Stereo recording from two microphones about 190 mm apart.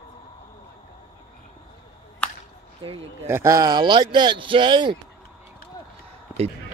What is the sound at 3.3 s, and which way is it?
Speech, 15° right (ahead or behind).